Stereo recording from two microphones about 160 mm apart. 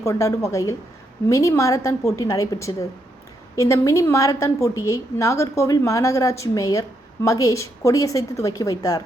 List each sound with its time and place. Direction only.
0.0 s a woman's voice: 20° left (ahead or behind)